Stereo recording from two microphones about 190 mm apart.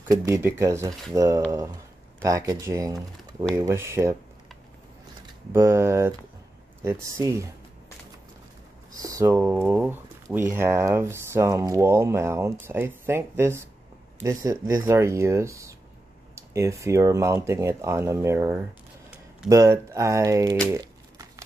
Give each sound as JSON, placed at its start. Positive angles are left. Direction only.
{"t": 0.1, "sound": "speech", "side_deg": -15}
{"t": 5.5, "sound": "speech", "side_deg": -15}
{"t": 9.0, "sound": "speech", "side_deg": -15}
{"t": 20.7, "sound": "crumpling", "side_deg": -20}